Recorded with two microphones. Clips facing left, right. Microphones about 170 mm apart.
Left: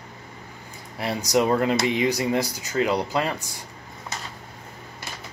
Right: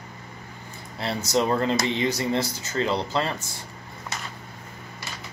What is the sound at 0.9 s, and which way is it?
Speech, 15° left (ahead or behind).